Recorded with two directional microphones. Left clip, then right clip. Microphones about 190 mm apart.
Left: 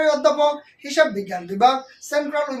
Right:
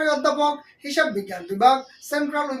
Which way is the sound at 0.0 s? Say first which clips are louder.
Left 3 dB; 20° left (ahead or behind).